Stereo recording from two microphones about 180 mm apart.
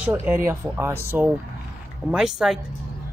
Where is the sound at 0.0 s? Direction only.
10° right (ahead or behind).